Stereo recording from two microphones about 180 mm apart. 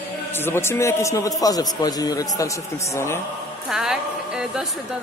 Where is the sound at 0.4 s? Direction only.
15° left (ahead or behind).